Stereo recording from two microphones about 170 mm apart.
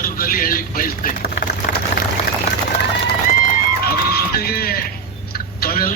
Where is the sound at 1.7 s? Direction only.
70° left (ahead or behind).